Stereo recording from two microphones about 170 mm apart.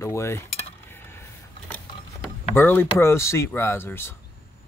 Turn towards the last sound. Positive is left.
turn(degrees=15)  # may be behind; listen again after turning